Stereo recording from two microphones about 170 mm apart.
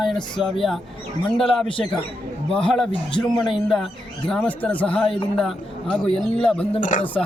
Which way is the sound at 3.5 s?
Centre (ahead or behind).